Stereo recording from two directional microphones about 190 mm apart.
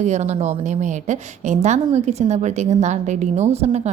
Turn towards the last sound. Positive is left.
turn(degrees=-35)  # may be behind; listen again after turning